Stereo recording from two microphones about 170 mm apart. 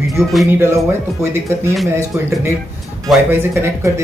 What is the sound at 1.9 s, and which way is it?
Speech, 15° right (ahead or behind).